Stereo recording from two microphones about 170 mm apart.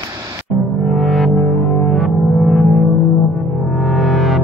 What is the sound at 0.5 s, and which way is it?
Music, centre (ahead or behind).